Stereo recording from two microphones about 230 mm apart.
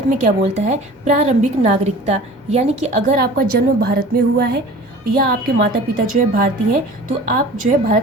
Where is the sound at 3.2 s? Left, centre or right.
Right.